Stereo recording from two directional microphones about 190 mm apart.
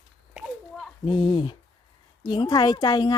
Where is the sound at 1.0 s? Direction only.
25° left (ahead or behind).